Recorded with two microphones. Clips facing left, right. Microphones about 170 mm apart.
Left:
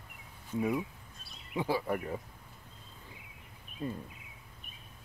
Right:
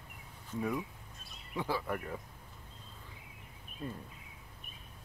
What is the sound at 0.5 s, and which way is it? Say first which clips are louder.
Speech: left 4 dB; 15° left (ahead or behind).